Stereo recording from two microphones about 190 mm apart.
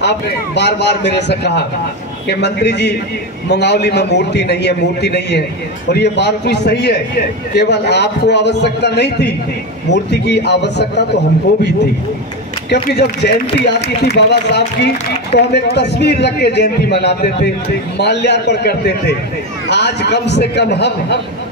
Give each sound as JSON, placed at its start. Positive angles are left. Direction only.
{"t": 0.6, "sound": "a man's voice", "side_deg": 60}
{"t": 12.6, "sound": "a man's voice", "side_deg": 60}